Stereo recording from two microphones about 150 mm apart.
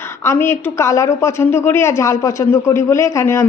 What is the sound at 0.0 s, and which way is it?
A woman's voice, 15° left (ahead or behind).